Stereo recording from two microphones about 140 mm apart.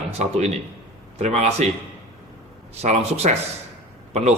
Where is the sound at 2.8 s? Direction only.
50° right (ahead or behind).